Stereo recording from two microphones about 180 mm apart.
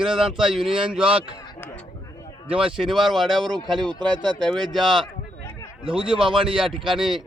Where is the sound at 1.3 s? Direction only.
20° left (ahead or behind).